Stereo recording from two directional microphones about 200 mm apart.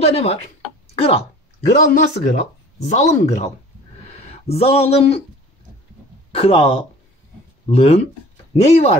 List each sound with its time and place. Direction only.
0.0 s speech: 30° left (ahead or behind)
1.8 s speech: 40° left (ahead or behind)
6.3 s speech: 30° left (ahead or behind)